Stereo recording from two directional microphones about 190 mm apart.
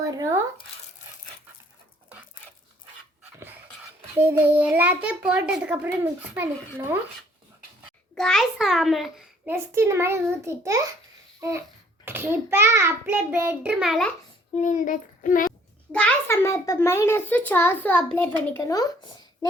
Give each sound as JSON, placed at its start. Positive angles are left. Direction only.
{"t": 0.0, "sound": "speech", "side_deg": -20}
{"t": 4.2, "sound": "a child's voice", "side_deg": -10}
{"t": 8.1, "sound": "a child's voice", "side_deg": 0}
{"t": 9.5, "sound": "a child's voice", "side_deg": -15}
{"t": 11.3, "sound": "a sound", "side_deg": -15}
{"t": 12.0, "sound": "a child's voice", "side_deg": -10}
{"t": 14.6, "sound": "a child's voice", "side_deg": 40}
{"t": 15.9, "sound": "a child's voice", "side_deg": 5}